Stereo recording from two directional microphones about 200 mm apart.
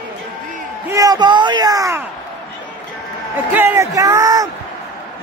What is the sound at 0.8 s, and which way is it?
A man's voice, 15° right (ahead or behind).